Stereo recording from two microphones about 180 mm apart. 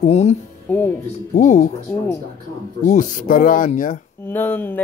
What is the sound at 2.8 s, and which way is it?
Speech, 45° left (ahead or behind).